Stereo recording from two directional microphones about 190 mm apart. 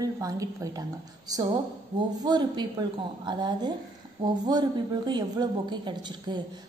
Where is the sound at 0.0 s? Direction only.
15° right (ahead or behind).